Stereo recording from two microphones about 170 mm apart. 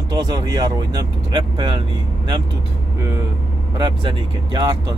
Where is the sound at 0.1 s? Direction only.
20° right (ahead or behind).